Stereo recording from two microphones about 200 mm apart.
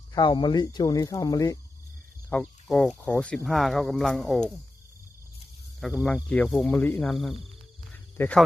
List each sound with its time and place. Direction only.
0.1 s speech: 20° left (ahead or behind)
2.2 s speech: 5° left (ahead or behind)
5.8 s speech: centre (ahead or behind)
7.9 s cricket: 5° left (ahead or behind)